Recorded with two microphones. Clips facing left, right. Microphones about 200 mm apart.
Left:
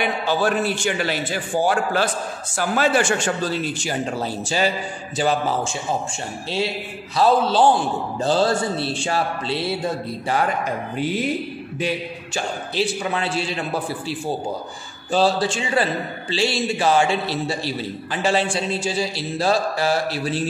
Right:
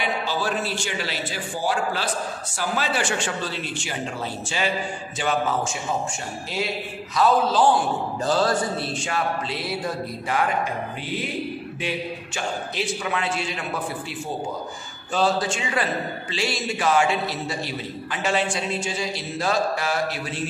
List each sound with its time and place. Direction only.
0.0 s a man's voice: 55° left (ahead or behind); by 5.8 s 30° left (ahead or behind)
7.2 s a sound: 30° left (ahead or behind)
12.7 s a man's voice: 30° left (ahead or behind)
15.1 s a man's voice: 30° left (ahead or behind)